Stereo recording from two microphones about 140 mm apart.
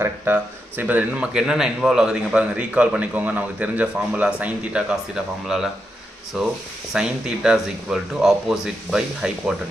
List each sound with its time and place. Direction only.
0.0 s speech: 15° right (ahead or behind)